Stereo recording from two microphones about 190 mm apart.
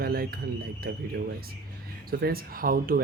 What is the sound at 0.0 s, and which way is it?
Speech, 55° right (ahead or behind).